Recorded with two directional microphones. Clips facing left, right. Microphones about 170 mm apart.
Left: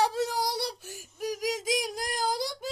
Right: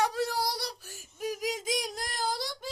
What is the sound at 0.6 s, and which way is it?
Child singing, 20° left (ahead or behind).